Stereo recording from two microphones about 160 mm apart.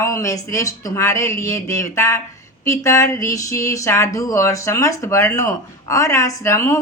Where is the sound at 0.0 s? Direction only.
20° left (ahead or behind).